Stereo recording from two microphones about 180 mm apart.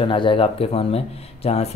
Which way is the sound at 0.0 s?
30° left (ahead or behind).